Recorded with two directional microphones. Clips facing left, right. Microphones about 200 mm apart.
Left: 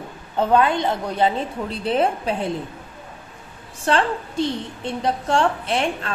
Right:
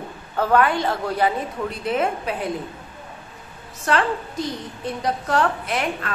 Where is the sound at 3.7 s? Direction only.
30° left (ahead or behind).